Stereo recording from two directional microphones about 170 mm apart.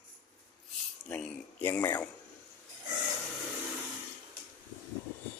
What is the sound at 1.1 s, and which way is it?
Speech, 10° left (ahead or behind).